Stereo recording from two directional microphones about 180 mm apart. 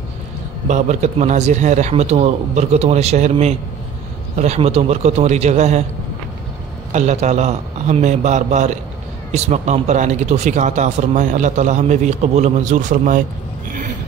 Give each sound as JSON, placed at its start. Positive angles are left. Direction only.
{"t": 0.7, "sound": "speech", "side_deg": -40}
{"t": 6.9, "sound": "speech", "side_deg": -40}